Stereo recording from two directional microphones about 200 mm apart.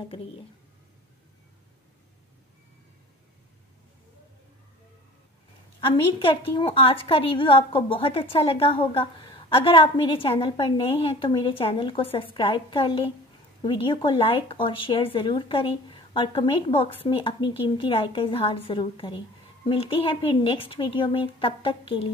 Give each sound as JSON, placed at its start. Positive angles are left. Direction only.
{"t": 0.0, "sound": "speech", "side_deg": 25}
{"t": 5.8, "sound": "speech", "side_deg": 25}